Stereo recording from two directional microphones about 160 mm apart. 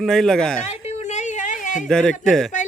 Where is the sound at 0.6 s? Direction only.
40° left (ahead or behind).